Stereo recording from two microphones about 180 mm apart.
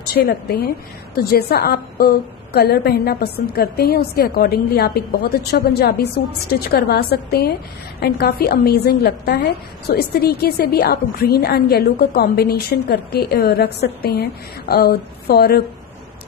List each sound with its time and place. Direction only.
0.1 s a woman's voice: 60° left (ahead or behind)